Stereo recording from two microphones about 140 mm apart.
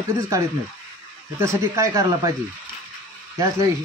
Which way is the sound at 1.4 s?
20° right (ahead or behind).